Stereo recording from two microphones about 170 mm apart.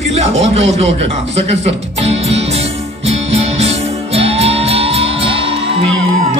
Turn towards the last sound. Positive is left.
turn(degrees=-35)  # may be behind; listen again after turning